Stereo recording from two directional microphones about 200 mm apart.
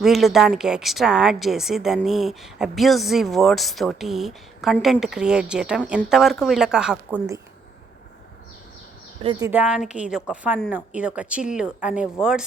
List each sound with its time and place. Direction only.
0.0 s a woman's voice: centre (ahead or behind)
9.2 s speech: 20° right (ahead or behind)
9.5 s a woman's voice: 5° right (ahead or behind)